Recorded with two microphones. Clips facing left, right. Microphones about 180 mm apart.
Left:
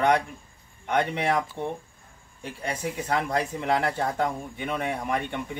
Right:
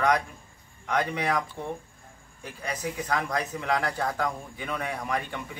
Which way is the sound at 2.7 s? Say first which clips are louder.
Left 1 dB; 30° left (ahead or behind).